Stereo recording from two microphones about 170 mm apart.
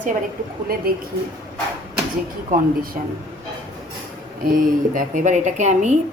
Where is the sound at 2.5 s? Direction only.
55° right (ahead or behind).